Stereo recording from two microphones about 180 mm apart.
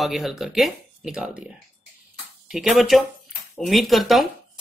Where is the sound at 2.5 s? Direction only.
Centre (ahead or behind).